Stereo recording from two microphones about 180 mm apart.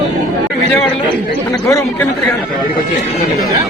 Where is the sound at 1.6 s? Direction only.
15° left (ahead or behind).